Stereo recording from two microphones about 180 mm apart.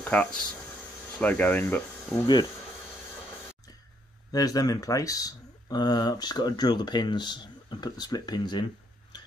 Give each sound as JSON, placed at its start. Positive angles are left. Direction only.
{"t": 0.0, "sound": "speech", "side_deg": 5}
{"t": 4.3, "sound": "speech", "side_deg": 20}